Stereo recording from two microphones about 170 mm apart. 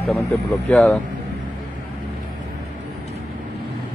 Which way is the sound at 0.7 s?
5° left (ahead or behind).